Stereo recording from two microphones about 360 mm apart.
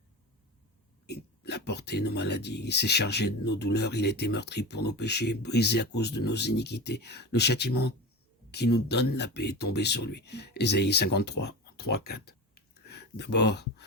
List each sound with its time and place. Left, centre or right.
1.0 s speech: left